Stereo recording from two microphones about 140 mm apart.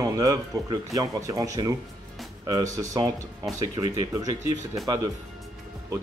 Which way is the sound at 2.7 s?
25° right (ahead or behind).